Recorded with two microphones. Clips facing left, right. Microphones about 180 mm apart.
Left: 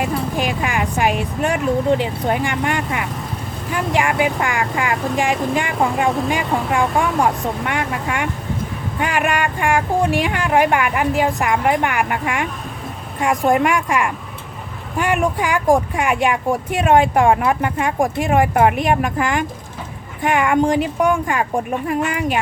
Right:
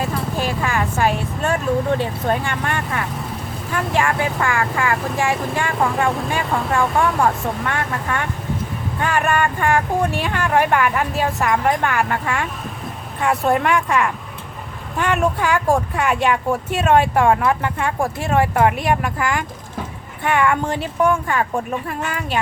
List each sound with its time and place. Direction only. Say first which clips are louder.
0.0 s speech: left 2 dB; 15° left (ahead or behind)